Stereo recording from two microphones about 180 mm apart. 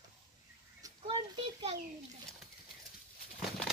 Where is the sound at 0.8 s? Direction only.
25° right (ahead or behind).